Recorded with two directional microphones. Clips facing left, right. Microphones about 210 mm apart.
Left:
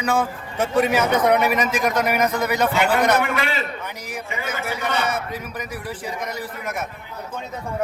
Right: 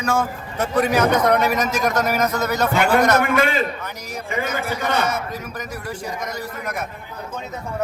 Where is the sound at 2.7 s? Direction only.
50° right (ahead or behind).